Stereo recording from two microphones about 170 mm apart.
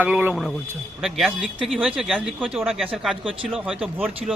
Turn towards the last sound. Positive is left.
turn(degrees=-5)  # may be behind; listen again after turning